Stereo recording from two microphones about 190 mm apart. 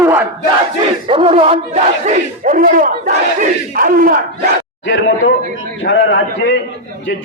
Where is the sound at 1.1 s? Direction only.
30° right (ahead or behind); by 4.2 s 45° right (ahead or behind).